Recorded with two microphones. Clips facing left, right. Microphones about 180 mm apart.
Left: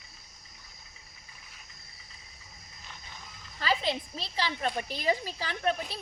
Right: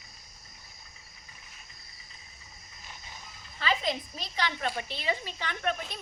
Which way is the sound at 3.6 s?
35° left (ahead or behind).